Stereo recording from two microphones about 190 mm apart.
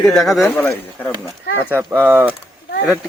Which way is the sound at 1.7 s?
10° right (ahead or behind).